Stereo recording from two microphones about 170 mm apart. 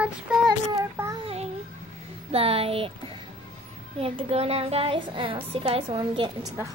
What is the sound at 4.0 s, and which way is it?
A woman's voice, 35° right (ahead or behind).